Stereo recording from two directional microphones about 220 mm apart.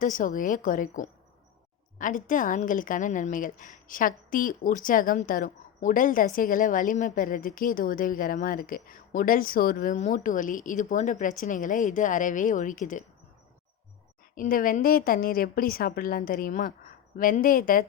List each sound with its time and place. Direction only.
0.0 s a woman's voice: 35° left (ahead or behind)
14.3 s a woman's voice: 40° left (ahead or behind)